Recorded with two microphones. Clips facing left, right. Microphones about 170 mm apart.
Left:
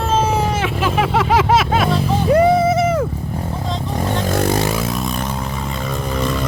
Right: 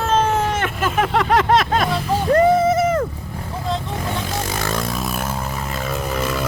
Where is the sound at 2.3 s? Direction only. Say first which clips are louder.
Left 1 dB; centre (ahead or behind).